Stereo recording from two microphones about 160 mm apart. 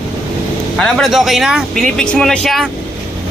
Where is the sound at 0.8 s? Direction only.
5° left (ahead or behind).